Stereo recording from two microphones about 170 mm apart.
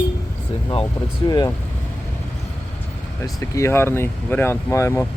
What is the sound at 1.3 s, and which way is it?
Speech, 25° left (ahead or behind).